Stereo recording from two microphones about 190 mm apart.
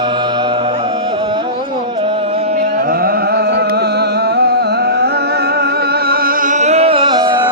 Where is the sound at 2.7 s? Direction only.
50° right (ahead or behind); by 7.3 s 25° right (ahead or behind).